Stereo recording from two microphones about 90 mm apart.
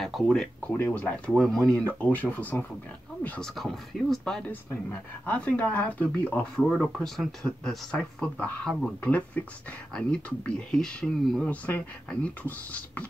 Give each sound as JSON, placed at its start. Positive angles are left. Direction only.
{"t": 0.0, "sound": "speech", "side_deg": 0}
{"t": 0.7, "sound": "speech", "side_deg": 20}
{"t": 1.3, "sound": "speech", "side_deg": 0}
{"t": 2.0, "sound": "speech", "side_deg": 20}
{"t": 3.5, "sound": "speech", "side_deg": 0}
{"t": 4.2, "sound": "speech", "side_deg": 10}
{"t": 6.7, "sound": "speech", "side_deg": 5}